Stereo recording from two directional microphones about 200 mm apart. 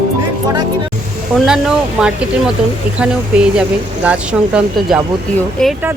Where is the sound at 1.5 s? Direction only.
5° right (ahead or behind).